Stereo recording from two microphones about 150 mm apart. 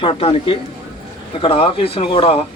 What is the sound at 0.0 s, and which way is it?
Speech, 40° left (ahead or behind).